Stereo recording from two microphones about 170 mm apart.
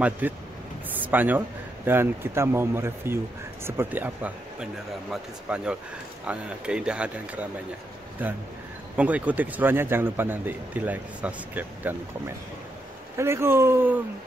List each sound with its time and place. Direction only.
0.2 s a man's voice: 10° right (ahead or behind)
0.8 s a sound: 10° right (ahead or behind)
1.9 s a man's voice: 15° right (ahead or behind)
13.2 s a man's voice: 15° right (ahead or behind)